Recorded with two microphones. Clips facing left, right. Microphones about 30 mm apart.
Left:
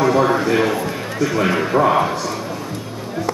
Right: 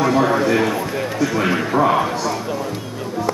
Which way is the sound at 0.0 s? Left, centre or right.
Centre.